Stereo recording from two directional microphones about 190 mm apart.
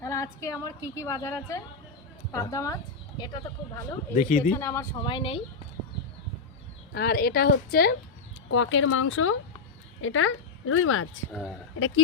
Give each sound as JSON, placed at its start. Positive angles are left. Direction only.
{"t": 0.0, "sound": "a woman's voice", "side_deg": 15}
{"t": 4.1, "sound": "a woman's voice", "side_deg": 40}
{"t": 4.5, "sound": "a woman's voice", "side_deg": 15}
{"t": 5.0, "sound": "speech", "side_deg": 25}
{"t": 6.9, "sound": "a woman's voice", "side_deg": 55}
{"t": 8.4, "sound": "speech", "side_deg": 85}
{"t": 11.3, "sound": "speech", "side_deg": 0}